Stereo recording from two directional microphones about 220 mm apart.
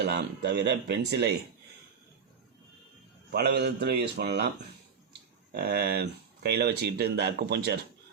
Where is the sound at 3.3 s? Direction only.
45° right (ahead or behind).